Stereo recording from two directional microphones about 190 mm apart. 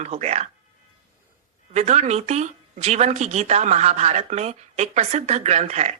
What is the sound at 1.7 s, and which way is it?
Speech, 35° right (ahead or behind).